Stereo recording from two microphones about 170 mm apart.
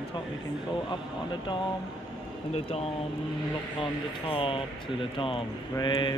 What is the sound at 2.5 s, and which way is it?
Speech, 35° left (ahead or behind).